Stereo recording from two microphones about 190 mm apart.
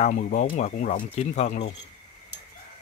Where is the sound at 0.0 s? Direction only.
40° left (ahead or behind).